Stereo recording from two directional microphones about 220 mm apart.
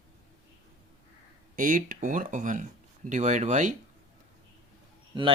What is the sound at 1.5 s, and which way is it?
Speech, 40° right (ahead or behind).